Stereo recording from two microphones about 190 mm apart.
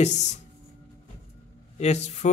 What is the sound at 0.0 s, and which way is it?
Speech, 35° left (ahead or behind).